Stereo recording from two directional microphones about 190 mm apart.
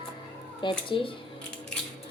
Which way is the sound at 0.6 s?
25° left (ahead or behind).